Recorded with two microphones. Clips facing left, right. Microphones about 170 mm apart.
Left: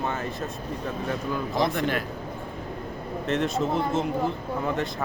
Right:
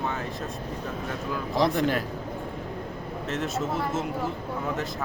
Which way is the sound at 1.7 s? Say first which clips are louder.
Right 2 dB; 35° right (ahead or behind).